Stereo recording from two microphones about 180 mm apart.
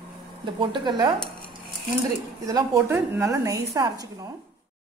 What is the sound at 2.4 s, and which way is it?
A woman's voice, 20° right (ahead or behind).